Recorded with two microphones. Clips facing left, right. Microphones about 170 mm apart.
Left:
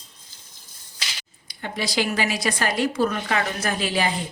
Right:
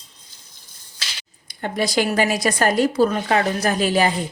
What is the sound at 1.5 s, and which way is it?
Speech, 50° right (ahead or behind).